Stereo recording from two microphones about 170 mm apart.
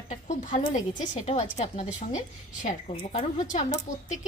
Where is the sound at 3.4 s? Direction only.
45° left (ahead or behind).